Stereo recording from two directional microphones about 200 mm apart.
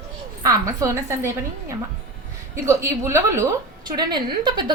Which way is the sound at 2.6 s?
15° right (ahead or behind).